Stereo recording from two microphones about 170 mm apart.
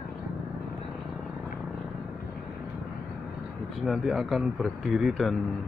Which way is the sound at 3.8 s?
Centre (ahead or behind).